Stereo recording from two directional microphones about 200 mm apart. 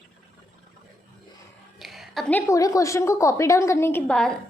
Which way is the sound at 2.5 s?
15° left (ahead or behind).